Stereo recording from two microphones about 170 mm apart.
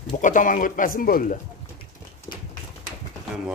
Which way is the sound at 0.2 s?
50° left (ahead or behind).